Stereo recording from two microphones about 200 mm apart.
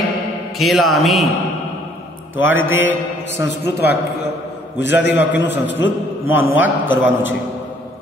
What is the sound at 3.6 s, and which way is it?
Speech, 55° left (ahead or behind).